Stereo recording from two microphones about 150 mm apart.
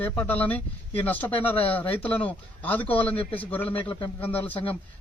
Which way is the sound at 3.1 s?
40° left (ahead or behind).